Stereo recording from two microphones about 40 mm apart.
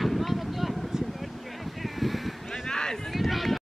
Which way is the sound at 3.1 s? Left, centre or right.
Centre.